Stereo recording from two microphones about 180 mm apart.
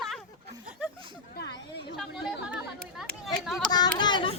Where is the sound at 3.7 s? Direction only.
25° left (ahead or behind).